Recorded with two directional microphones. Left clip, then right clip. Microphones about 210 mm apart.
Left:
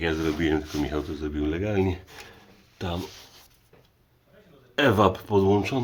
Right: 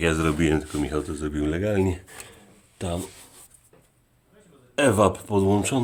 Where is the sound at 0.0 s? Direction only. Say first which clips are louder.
Right 3 dB; 35° right (ahead or behind).